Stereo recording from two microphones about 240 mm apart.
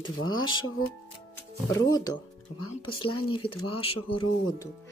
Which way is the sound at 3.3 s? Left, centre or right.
Left.